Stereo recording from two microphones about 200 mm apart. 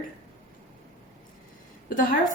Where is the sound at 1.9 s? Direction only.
40° left (ahead or behind).